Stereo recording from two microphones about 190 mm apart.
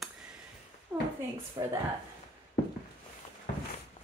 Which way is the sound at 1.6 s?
20° right (ahead or behind).